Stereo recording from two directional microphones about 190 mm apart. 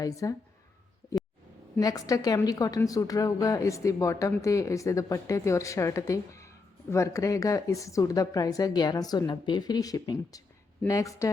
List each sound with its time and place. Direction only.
0.0 s a woman's voice: 20° left (ahead or behind)
1.8 s a woman's voice: 20° left (ahead or behind)